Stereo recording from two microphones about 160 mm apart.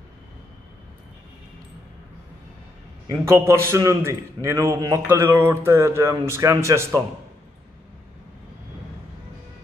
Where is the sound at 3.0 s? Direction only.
15° right (ahead or behind).